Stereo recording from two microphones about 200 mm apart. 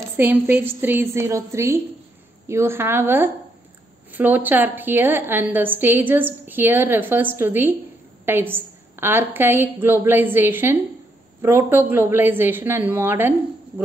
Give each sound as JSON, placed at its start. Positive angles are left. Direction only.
{"t": 0.2, "sound": "a woman's voice", "side_deg": -10}